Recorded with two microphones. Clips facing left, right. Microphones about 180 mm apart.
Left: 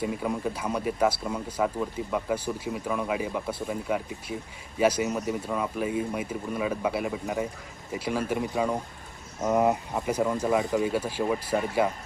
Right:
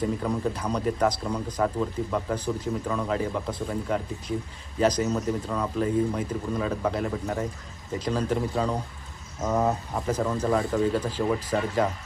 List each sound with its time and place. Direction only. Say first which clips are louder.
0.0 s speech: right 2 dB; 10° left (ahead or behind)